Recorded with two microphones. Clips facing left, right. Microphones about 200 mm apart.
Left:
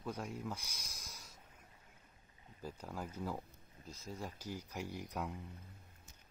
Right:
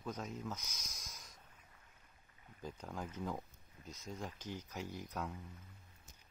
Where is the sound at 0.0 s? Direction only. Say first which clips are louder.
Left 1 dB; 10° left (ahead or behind).